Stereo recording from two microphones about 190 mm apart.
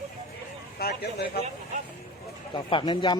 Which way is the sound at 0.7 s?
55° left (ahead or behind).